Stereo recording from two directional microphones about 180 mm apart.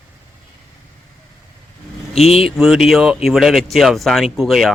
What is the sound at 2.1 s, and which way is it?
Speech, 35° left (ahead or behind).